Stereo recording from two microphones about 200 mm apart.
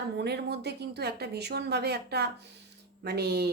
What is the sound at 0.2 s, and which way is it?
Speech, 55° right (ahead or behind).